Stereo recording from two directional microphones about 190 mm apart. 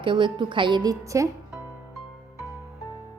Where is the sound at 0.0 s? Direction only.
25° right (ahead or behind).